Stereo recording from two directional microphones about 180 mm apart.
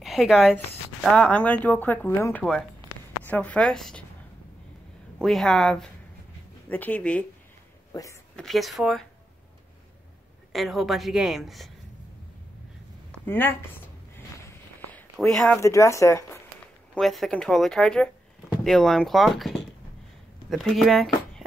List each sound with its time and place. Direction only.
0.0 s speech: centre (ahead or behind)
5.2 s a woman's voice: centre (ahead or behind)
7.9 s a woman's voice: 20° left (ahead or behind)
8.4 s a woman's voice: centre (ahead or behind)
10.5 s a woman's voice: centre (ahead or behind)
13.1 s speech: 10° left (ahead or behind)
14.9 s a sound: 5° left (ahead or behind)
15.6 s speech: 15° left (ahead or behind)
16.9 s a woman's voice: centre (ahead or behind)